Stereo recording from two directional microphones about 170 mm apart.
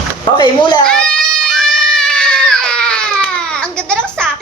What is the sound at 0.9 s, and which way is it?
Baby cry, 5° left (ahead or behind).